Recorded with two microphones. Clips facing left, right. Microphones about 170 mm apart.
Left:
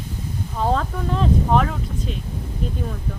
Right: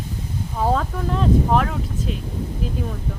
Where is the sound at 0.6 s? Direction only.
5° right (ahead or behind).